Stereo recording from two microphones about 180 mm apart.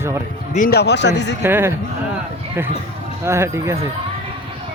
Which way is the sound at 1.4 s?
10° right (ahead or behind).